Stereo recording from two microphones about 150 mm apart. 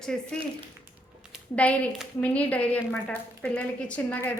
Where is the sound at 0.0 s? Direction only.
5° left (ahead or behind).